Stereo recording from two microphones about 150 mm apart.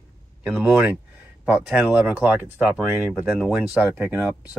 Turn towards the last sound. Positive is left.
turn(degrees=-10)  # may be behind; listen again after turning